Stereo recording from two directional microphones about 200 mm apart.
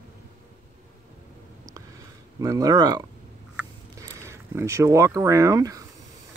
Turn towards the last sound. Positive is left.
turn(degrees=-15)  # may be behind; listen again after turning